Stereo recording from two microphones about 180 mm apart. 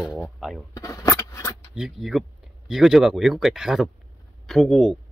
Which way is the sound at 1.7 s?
Centre (ahead or behind).